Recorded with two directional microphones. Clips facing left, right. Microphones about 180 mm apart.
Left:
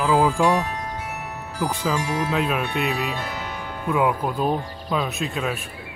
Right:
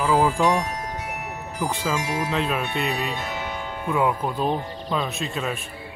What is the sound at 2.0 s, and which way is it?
Speech, 15° right (ahead or behind).